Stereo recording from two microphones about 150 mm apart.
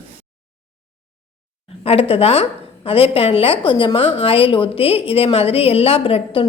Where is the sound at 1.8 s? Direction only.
40° left (ahead or behind).